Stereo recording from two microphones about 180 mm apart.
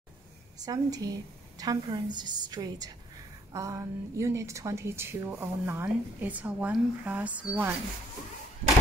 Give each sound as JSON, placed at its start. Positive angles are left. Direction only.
{"t": 0.7, "sound": "a woman's voice", "side_deg": -20}